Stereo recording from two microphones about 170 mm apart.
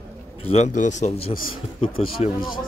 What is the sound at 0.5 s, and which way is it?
Speech, 45° left (ahead or behind).